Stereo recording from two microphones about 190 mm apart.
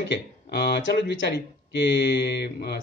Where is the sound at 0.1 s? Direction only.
60° left (ahead or behind).